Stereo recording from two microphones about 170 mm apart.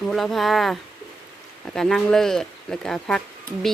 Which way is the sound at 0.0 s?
Centre (ahead or behind).